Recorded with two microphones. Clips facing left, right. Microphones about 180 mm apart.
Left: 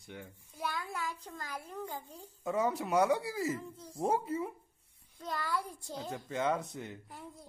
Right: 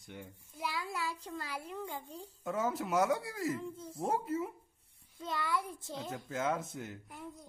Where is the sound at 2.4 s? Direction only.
Centre (ahead or behind).